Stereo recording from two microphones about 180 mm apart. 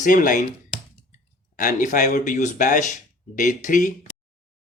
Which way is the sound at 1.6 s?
45° left (ahead or behind).